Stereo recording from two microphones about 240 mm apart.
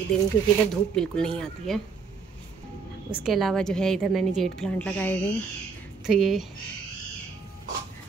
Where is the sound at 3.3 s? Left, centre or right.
Centre.